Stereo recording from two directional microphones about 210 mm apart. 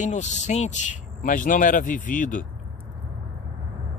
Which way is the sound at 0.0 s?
35° left (ahead or behind).